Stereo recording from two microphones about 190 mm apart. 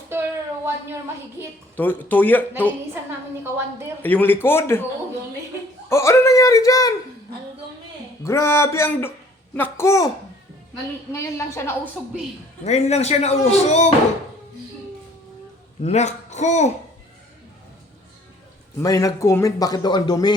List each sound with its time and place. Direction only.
0.1 s a sound: 10° right (ahead or behind)
1.7 s speech: 10° left (ahead or behind)
4.0 s speech: 10° left (ahead or behind)
5.9 s speech: 15° left (ahead or behind)
8.2 s speech: 15° left (ahead or behind)
11.1 s speech: 15° left (ahead or behind)
12.6 s a man's voice: 35° left (ahead or behind)
15.8 s a man's voice: 35° left (ahead or behind)
18.8 s a man's voice: 15° left (ahead or behind)